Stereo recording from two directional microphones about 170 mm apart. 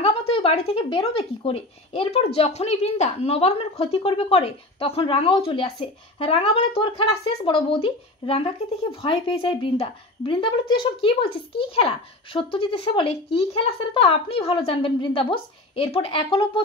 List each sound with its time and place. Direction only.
0.0 s speech: 35° left (ahead or behind)